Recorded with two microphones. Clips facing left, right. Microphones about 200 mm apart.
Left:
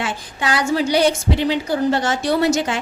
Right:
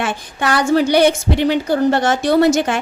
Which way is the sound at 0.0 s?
60° right (ahead or behind).